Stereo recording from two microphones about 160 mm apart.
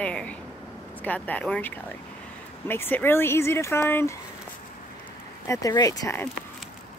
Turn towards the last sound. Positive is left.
turn(degrees=20)  # may be behind; listen again after turning